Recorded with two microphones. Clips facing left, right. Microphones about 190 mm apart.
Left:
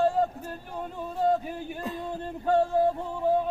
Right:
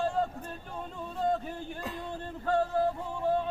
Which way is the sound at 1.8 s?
20° left (ahead or behind).